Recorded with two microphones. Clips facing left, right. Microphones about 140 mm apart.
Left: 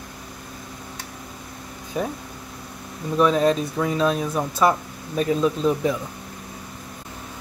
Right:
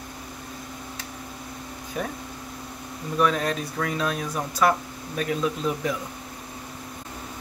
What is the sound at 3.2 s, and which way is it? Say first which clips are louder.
Speech: left 5 dB; 25° left (ahead or behind).